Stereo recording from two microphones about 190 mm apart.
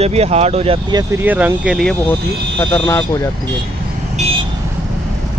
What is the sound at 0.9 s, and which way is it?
Speech, 10° right (ahead or behind).